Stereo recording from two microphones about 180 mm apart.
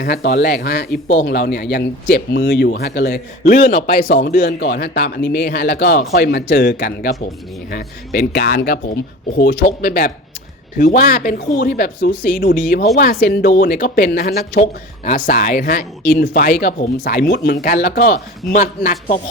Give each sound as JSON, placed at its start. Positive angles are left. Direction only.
{"t": 0.0, "sound": "speech", "side_deg": 55}
{"t": 1.1, "sound": "speech", "side_deg": 75}
{"t": 3.4, "sound": "speech", "side_deg": 45}
{"t": 4.1, "sound": "speech", "side_deg": 55}
{"t": 4.6, "sound": "speech", "side_deg": 65}
{"t": 15.0, "sound": "speech", "side_deg": 45}